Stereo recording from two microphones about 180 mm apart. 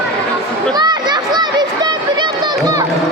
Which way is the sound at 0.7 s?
25° right (ahead or behind).